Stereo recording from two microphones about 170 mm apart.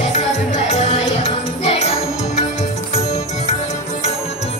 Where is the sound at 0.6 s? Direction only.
40° left (ahead or behind).